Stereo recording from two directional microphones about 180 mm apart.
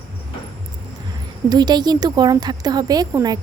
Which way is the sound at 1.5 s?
25° right (ahead or behind).